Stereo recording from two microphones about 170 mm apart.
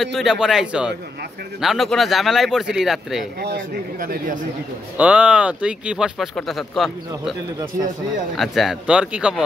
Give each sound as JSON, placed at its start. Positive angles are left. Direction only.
{"t": 0.0, "sound": "speech", "side_deg": 0}
{"t": 3.3, "sound": "speech", "side_deg": -65}
{"t": 4.9, "sound": "speech", "side_deg": -5}
{"t": 8.4, "sound": "speech", "side_deg": 0}